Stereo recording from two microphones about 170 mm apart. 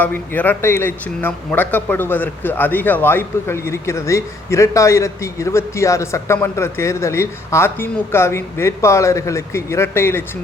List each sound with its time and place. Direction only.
0.0 s speech: 10° left (ahead or behind)